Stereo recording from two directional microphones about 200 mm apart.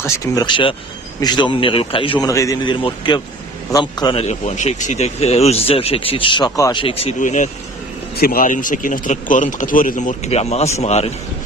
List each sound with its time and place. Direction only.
0.0 s speech: 15° left (ahead or behind); by 11.1 s 35° left (ahead or behind)